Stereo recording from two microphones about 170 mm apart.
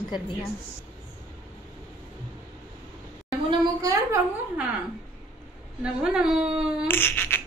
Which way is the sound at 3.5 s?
20° right (ahead or behind).